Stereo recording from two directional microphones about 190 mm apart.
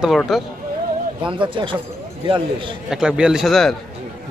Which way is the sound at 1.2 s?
25° right (ahead or behind).